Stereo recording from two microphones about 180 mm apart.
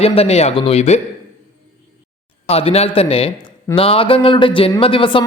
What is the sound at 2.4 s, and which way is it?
Speech, 35° left (ahead or behind).